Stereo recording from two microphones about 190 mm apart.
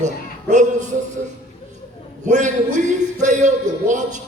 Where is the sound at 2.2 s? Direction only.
40° right (ahead or behind).